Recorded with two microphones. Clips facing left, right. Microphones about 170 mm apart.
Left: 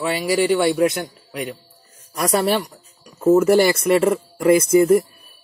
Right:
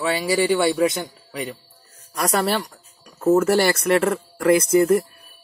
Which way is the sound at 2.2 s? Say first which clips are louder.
Left 3 dB; 15° left (ahead or behind).